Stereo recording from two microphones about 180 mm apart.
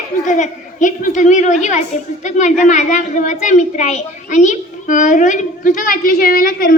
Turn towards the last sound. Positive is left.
turn(degrees=55)  # may be behind; listen again after turning